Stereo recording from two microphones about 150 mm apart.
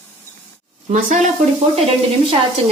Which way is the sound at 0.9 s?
55° right (ahead or behind).